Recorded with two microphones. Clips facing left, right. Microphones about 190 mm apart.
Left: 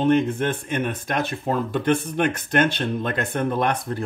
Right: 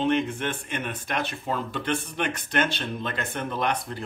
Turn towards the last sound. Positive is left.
turn(degrees=50)  # may be behind; listen again after turning